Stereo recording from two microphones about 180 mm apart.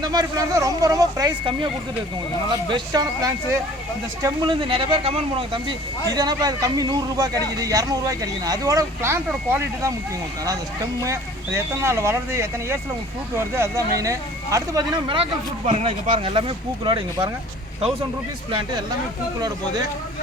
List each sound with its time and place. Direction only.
0.0 s speech: 20° right (ahead or behind)
4.7 s speech: 30° right (ahead or behind); by 9.9 s 15° right (ahead or behind)
11.0 s speech: 15° right (ahead or behind)